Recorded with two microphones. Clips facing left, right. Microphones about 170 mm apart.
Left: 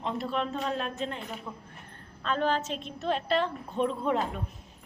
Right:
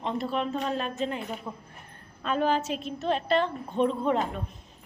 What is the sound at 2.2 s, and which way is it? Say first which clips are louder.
A woman's voice: right 2 dB; 10° right (ahead or behind).